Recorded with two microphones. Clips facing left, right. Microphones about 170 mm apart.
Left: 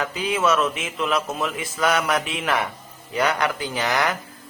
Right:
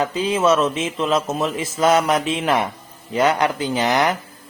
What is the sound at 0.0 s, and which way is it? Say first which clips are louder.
Speech: right 4 dB; 25° right (ahead or behind).